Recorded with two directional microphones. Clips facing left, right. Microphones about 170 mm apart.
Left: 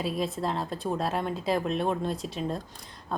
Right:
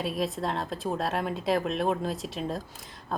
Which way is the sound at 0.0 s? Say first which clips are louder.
Even; centre (ahead or behind).